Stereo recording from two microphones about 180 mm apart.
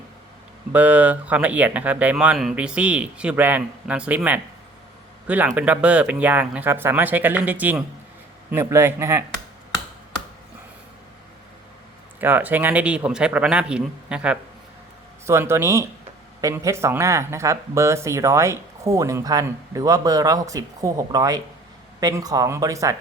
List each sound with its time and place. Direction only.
0.7 s speech: 10° right (ahead or behind)
12.2 s speech: 10° right (ahead or behind)